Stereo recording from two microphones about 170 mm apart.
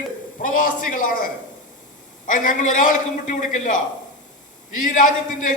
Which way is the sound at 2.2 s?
50° left (ahead or behind).